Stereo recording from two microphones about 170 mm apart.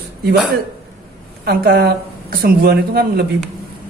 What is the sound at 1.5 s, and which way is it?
Speech, 70° right (ahead or behind).